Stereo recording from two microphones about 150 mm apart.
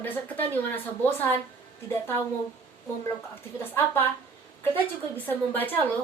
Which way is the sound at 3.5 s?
15° left (ahead or behind).